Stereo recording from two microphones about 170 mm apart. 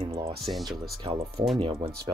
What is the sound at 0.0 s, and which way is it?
Music, 30° right (ahead or behind).